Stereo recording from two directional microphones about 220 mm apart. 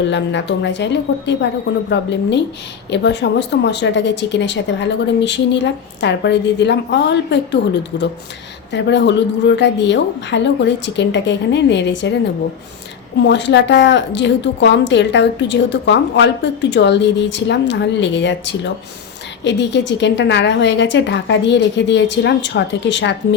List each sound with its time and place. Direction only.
0.1 s a woman's voice: 55° left (ahead or behind)
13.2 s a woman's voice: 55° left (ahead or behind)